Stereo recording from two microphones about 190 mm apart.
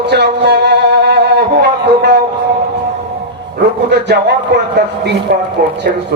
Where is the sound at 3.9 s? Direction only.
60° right (ahead or behind).